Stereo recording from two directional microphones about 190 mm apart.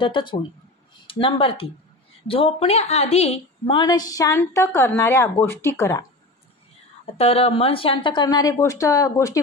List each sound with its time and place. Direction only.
0.0 s a woman's voice: 25° left (ahead or behind)
7.2 s speech: 30° left (ahead or behind); by 9.4 s 15° left (ahead or behind)